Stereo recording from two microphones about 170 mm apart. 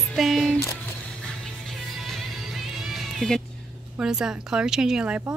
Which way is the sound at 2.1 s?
Centre (ahead or behind).